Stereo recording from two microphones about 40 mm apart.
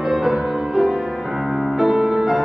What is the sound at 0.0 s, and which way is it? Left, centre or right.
Music, centre.